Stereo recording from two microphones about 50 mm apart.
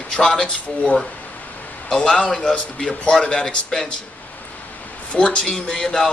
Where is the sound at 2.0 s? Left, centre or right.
Centre.